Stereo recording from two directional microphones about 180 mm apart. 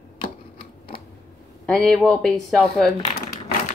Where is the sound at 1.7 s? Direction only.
5° left (ahead or behind).